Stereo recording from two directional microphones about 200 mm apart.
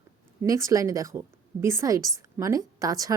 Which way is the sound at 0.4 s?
15° right (ahead or behind).